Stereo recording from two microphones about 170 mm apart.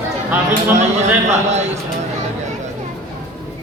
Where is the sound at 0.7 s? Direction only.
40° right (ahead or behind).